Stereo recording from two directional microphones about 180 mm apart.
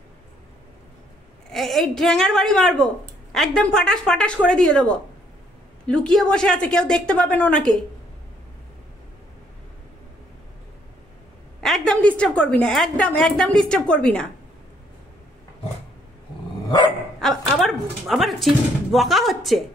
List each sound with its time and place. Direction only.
1.5 s a woman's voice: centre (ahead or behind)
11.6 s a woman's voice: centre (ahead or behind)
16.6 s dog: 20° left (ahead or behind)
17.2 s speech: centre (ahead or behind)